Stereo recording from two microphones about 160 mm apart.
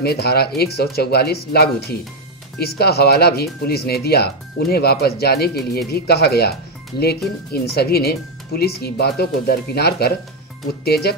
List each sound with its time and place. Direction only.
0.0 s speech: 80° left
7.5 s speech: 75° left (ahead or behind)